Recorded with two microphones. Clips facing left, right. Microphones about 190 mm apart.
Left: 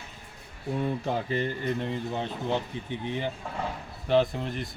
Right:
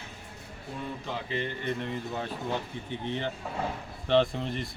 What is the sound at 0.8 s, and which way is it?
Speech, 45° left (ahead or behind).